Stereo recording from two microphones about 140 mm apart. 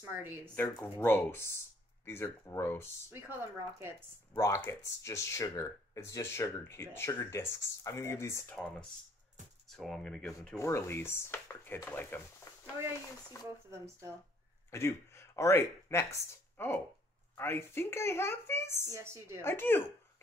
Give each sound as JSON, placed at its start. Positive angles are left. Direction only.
{"t": 0.0, "sound": "speech", "side_deg": -15}
{"t": 0.9, "sound": "speech", "side_deg": 15}
{"t": 3.1, "sound": "speech", "side_deg": -15}
{"t": 4.3, "sound": "speech", "side_deg": 25}
{"t": 9.7, "sound": "speech", "side_deg": 0}
{"t": 10.6, "sound": "speech", "side_deg": 20}
{"t": 12.5, "sound": "a sound", "side_deg": 25}
{"t": 13.4, "sound": "speech", "side_deg": 20}
{"t": 13.7, "sound": "a woman's voice", "side_deg": -20}
{"t": 14.7, "sound": "speech", "side_deg": 20}
{"t": 18.9, "sound": "a woman's voice", "side_deg": -20}
{"t": 19.4, "sound": "speech", "side_deg": 15}